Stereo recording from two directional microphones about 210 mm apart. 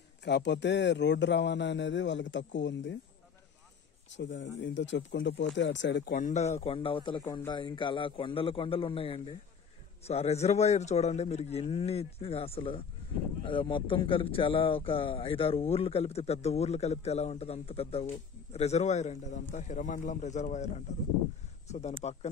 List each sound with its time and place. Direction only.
0.2 s speech: 55° left (ahead or behind)
4.2 s speech: 60° left (ahead or behind)
6.1 s speech: 35° left (ahead or behind)